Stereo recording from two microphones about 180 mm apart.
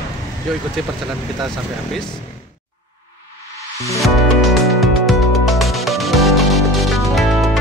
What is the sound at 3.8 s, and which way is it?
Music, 15° left (ahead or behind).